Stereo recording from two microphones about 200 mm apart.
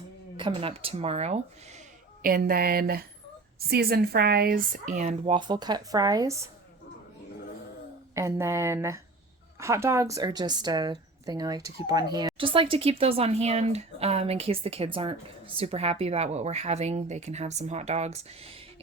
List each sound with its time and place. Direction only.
0.3 s speech: 25° right (ahead or behind)
2.2 s speech: 45° right (ahead or behind); by 6.5 s 15° right (ahead or behind)
8.1 s speech: 15° right (ahead or behind); by 18.6 s 30° right (ahead or behind)